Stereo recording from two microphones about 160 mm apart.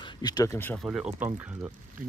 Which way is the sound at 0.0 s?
25° left (ahead or behind).